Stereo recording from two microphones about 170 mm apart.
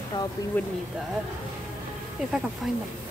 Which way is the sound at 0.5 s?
10° left (ahead or behind).